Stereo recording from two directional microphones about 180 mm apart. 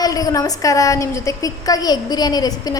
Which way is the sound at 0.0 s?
20° left (ahead or behind).